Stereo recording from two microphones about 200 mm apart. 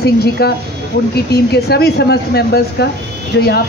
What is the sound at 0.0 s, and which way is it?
Speech, 55° left (ahead or behind).